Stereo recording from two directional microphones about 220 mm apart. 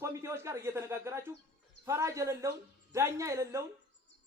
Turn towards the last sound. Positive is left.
turn(degrees=-15)  # may be behind; listen again after turning